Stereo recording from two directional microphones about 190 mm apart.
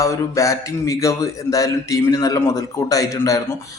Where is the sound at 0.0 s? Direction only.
15° left (ahead or behind).